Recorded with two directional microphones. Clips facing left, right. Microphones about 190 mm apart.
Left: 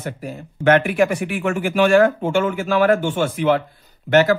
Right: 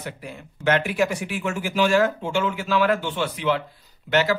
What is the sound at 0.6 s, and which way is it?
A man's voice, 55° left (ahead or behind).